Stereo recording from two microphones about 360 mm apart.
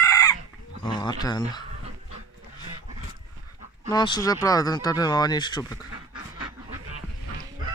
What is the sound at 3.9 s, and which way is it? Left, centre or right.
Speech, centre.